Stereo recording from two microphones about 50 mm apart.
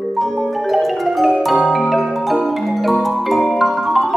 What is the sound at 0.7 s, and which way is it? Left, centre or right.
Music, centre.